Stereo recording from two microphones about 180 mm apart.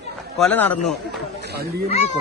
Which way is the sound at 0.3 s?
5° left (ahead or behind).